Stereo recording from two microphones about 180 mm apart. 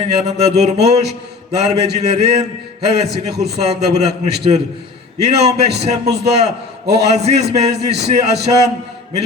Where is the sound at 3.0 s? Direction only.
65° right (ahead or behind).